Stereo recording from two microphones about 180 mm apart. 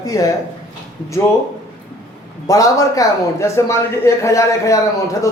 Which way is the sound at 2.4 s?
20° left (ahead or behind).